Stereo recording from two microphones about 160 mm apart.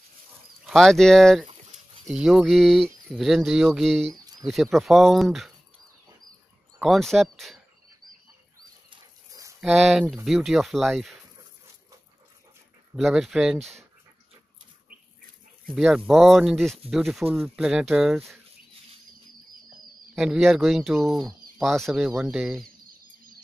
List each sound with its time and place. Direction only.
0.7 s speech: 5° left (ahead or behind)
1.5 s bird: 35° right (ahead or behind)
2.1 s speech: 5° right (ahead or behind)
6.8 s speech: centre (ahead or behind)
9.3 s dog: 20° right (ahead or behind)
9.6 s speech: centre (ahead or behind)
12.9 s speech: centre (ahead or behind)
15.7 s speech: centre (ahead or behind)
20.2 s speech: centre (ahead or behind)